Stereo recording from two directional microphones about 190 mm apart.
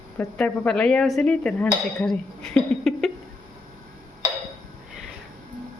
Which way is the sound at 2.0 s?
5° left (ahead or behind).